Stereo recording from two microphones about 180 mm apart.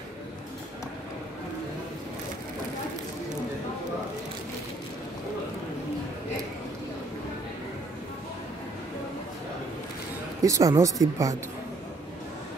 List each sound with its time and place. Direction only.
10.4 s speech: 20° right (ahead or behind)